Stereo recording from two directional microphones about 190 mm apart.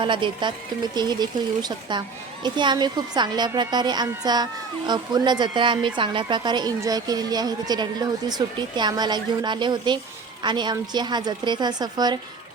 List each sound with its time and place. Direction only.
0.0 s a woman's voice: 25° right (ahead or behind)